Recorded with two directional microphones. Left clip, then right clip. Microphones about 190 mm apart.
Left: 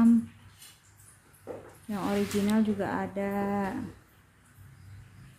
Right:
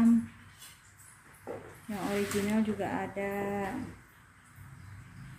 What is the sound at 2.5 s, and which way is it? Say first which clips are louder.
Speech: left 3 dB; 25° left (ahead or behind).